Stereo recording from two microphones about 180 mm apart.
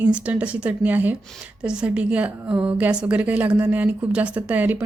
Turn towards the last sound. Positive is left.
turn(degrees=-10)  # may be behind; listen again after turning